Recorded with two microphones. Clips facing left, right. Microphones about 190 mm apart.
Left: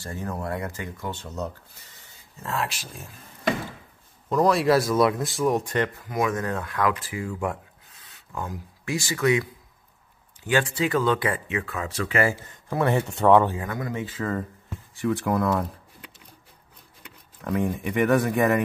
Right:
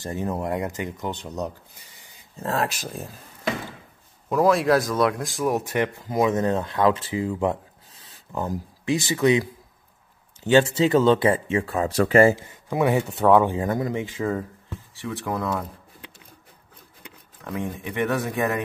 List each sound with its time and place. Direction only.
0.0 s speech: 20° right (ahead or behind)
2.4 s speech: 40° right (ahead or behind)
4.3 s speech: 5° right (ahead or behind)
6.0 s speech: 25° right (ahead or behind)
8.0 s a sound: 30° right (ahead or behind)
8.8 s speech: 20° right (ahead or behind); by 12.2 s 35° right (ahead or behind)
12.6 s speech: 15° right (ahead or behind)
12.9 s speech: centre (ahead or behind)
13.5 s speech: 25° right (ahead or behind)
15.0 s speech: centre (ahead or behind)
17.4 s speech: 5° left (ahead or behind)